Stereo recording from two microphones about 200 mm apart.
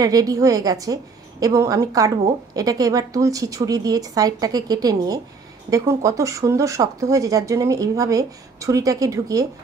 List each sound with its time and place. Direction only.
0.0 s speech: 20° right (ahead or behind)